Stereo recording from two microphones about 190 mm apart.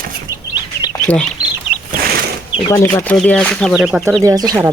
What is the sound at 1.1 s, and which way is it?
Speech, 5° left (ahead or behind).